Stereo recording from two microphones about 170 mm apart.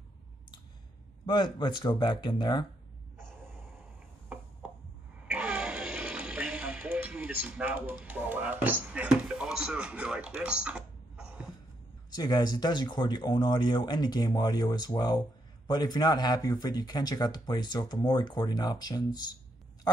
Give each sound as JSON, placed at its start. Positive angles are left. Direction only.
{"t": 1.2, "sound": "speech", "side_deg": 25}
{"t": 5.3, "sound": "music", "side_deg": -5}
{"t": 12.1, "sound": "speech", "side_deg": 25}